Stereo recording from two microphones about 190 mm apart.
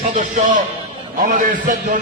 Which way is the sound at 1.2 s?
40° right (ahead or behind).